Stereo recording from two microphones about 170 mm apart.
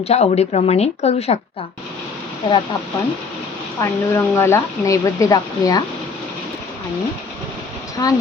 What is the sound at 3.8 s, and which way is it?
Speech, 15° left (ahead or behind).